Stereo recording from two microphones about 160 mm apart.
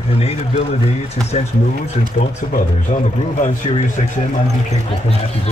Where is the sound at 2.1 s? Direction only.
50° left (ahead or behind).